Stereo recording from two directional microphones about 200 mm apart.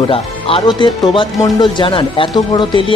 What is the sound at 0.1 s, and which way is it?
Speech, 30° left (ahead or behind).